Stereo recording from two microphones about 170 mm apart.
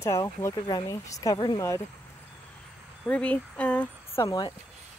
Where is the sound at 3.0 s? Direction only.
10° left (ahead or behind).